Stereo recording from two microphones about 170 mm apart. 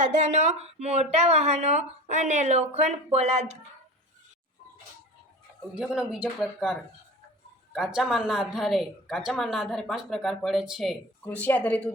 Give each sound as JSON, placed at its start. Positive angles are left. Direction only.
{"t": 0.0, "sound": "speech", "side_deg": -45}
{"t": 5.7, "sound": "a woman's voice", "side_deg": -5}
{"t": 7.9, "sound": "a woman's voice", "side_deg": -5}